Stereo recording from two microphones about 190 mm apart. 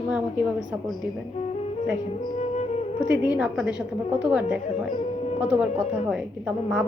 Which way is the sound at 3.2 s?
5° right (ahead or behind).